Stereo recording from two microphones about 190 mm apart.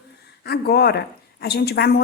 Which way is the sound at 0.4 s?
55° left (ahead or behind).